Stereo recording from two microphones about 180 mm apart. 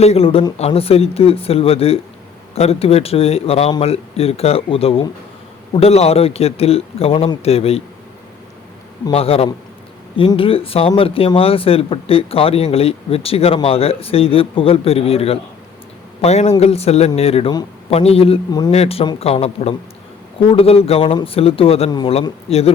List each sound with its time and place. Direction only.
0.0 s speech: 35° left (ahead or behind)
9.1 s speech: 35° left (ahead or behind)